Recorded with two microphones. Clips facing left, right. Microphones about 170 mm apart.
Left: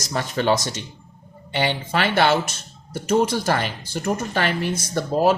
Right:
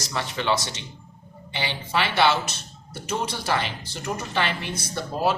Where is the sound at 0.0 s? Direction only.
45° left (ahead or behind).